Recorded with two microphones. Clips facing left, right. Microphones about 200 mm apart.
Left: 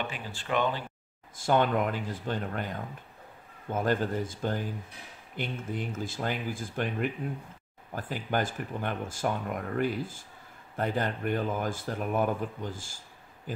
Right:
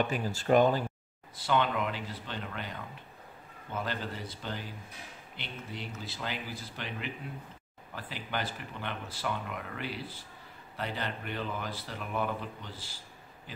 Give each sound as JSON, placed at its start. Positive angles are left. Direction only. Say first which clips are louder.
{"t": 0.0, "sound": "speech", "louder": "right 6 dB", "side_deg": -40}
{"t": 1.3, "sound": "speech", "louder": "left 4 dB", "side_deg": 45}